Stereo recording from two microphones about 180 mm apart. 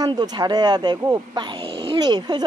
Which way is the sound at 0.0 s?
25° right (ahead or behind).